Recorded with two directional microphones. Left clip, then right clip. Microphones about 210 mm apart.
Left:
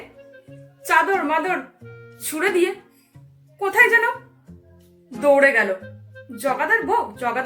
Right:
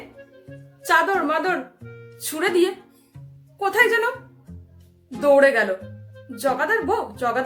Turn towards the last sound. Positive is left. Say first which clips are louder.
# left 1 dB
turn(degrees=-15)  # may be behind; listen again after turning